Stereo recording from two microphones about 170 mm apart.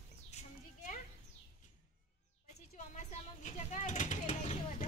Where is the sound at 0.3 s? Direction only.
40° left (ahead or behind).